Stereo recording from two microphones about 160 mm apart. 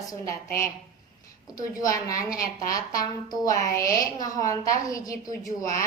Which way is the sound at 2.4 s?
65° left (ahead or behind).